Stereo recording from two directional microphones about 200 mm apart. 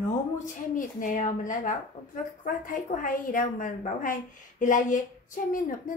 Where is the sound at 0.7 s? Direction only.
40° left (ahead or behind).